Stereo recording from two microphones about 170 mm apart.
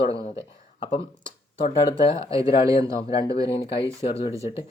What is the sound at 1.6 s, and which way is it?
Speech, 30° left (ahead or behind).